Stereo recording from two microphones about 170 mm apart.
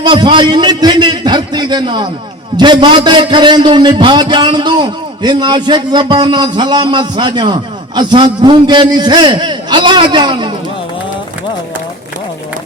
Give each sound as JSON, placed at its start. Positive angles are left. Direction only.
{"t": 0.0, "sound": "a man's voice", "side_deg": -30}